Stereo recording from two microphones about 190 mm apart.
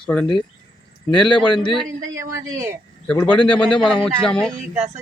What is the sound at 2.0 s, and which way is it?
Speech, 15° right (ahead or behind).